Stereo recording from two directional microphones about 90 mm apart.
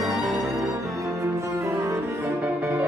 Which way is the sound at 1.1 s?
30° right (ahead or behind).